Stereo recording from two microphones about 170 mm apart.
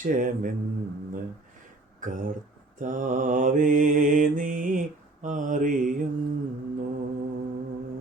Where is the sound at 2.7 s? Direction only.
50° right (ahead or behind).